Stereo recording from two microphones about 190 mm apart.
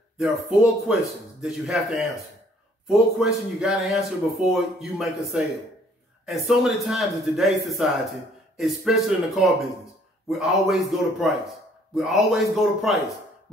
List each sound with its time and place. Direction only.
0.2 s speech: centre (ahead or behind)